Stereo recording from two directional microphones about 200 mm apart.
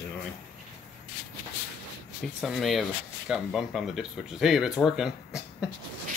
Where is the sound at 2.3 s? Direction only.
Centre (ahead or behind).